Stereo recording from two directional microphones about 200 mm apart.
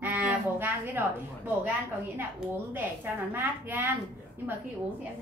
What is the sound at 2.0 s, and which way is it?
A woman's voice, 10° right (ahead or behind).